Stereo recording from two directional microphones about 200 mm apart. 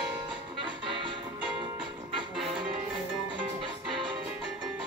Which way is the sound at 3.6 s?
25° right (ahead or behind).